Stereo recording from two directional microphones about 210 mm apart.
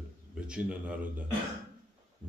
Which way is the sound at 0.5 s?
5° right (ahead or behind).